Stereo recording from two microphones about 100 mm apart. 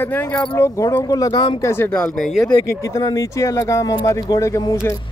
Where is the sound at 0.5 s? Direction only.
30° left (ahead or behind).